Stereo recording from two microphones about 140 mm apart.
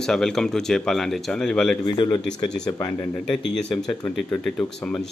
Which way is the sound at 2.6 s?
20° left (ahead or behind).